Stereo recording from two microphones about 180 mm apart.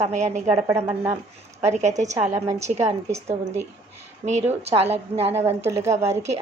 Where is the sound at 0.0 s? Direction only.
40° right (ahead or behind).